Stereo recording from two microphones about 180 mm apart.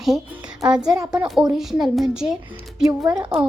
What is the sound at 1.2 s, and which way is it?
A woman's voice, centre (ahead or behind).